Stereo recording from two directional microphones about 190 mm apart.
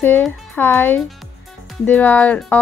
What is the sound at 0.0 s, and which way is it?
A woman's voice, 10° left (ahead or behind).